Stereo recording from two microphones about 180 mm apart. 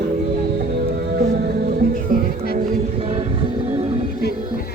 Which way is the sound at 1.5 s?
55° right (ahead or behind).